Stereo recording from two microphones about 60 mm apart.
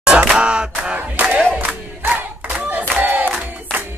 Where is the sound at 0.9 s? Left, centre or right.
Right.